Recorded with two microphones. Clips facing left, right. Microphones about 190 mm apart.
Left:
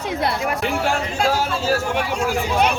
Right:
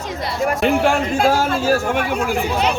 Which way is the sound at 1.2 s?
50° right (ahead or behind).